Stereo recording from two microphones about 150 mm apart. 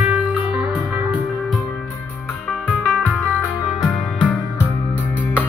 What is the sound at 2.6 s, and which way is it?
Music, 5° left (ahead or behind).